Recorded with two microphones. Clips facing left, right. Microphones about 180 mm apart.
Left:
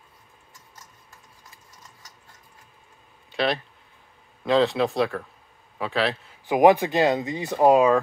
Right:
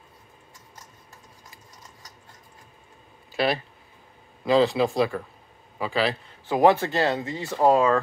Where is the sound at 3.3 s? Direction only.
5° right (ahead or behind).